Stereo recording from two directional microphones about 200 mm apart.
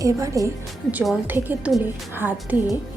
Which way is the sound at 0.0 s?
15° right (ahead or behind).